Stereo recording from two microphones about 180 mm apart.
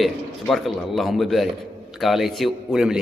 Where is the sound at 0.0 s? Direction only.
Centre (ahead or behind).